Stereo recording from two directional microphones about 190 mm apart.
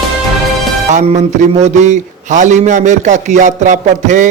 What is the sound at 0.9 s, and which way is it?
A man's voice, 40° right (ahead or behind).